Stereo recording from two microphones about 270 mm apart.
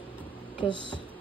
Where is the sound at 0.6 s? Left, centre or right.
Centre.